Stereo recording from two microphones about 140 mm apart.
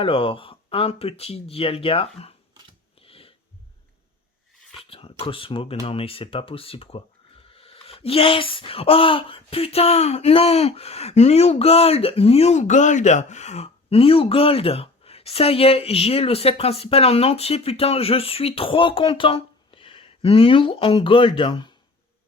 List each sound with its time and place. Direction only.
0.0 s speech: 40° left (ahead or behind)
3.0 s a sound: 40° left (ahead or behind)
4.9 s speech: 40° left (ahead or behind)